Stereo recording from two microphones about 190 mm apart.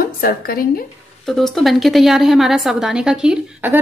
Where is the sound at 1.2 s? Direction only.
Centre (ahead or behind).